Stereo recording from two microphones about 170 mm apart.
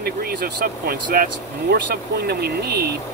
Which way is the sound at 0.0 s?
60° right (ahead or behind).